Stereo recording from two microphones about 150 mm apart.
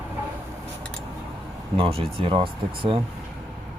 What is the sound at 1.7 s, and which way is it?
Speech, 40° right (ahead or behind).